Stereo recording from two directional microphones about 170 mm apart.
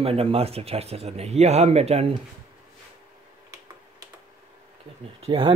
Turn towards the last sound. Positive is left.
turn(degrees=-30)  # may be behind; listen again after turning